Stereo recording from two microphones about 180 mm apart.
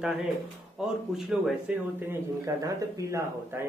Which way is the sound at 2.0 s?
15° right (ahead or behind).